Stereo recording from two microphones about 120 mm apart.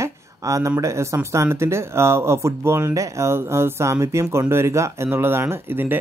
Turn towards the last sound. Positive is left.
turn(degrees=-15)  # may be behind; listen again after turning